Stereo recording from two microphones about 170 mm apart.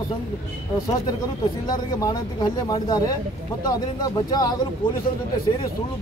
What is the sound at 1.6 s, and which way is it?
Speech, 25° left (ahead or behind).